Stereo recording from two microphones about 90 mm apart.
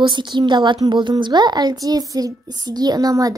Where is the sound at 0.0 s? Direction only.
60° right (ahead or behind).